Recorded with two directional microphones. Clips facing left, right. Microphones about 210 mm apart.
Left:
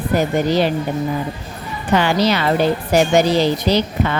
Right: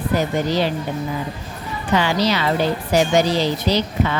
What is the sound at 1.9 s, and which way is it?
A woman's voice, 55° left (ahead or behind).